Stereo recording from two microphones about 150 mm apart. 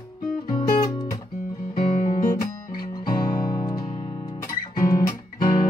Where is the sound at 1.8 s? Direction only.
65° left (ahead or behind).